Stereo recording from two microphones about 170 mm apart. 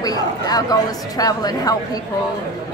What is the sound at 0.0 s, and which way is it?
Speech, 20° left (ahead or behind).